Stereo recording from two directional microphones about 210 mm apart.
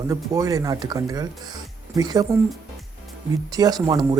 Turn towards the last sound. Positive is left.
turn(degrees=-20)  # may be behind; listen again after turning